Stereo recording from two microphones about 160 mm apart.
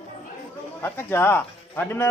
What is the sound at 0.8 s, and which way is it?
Speech, 15° left (ahead or behind).